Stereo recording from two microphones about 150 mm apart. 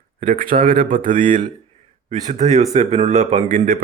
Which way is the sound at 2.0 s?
50° right (ahead or behind).